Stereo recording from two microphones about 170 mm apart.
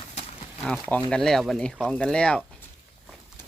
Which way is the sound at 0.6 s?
Centre (ahead or behind).